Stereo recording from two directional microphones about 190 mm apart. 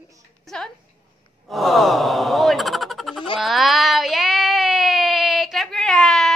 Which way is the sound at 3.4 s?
Centre (ahead or behind).